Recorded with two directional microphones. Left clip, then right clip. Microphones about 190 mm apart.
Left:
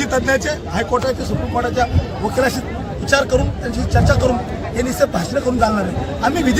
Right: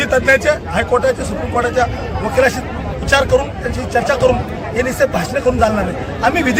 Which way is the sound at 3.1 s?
15° right (ahead or behind).